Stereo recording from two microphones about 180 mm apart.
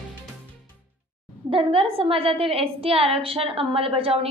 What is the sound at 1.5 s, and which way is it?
A woman's voice, 30° right (ahead or behind).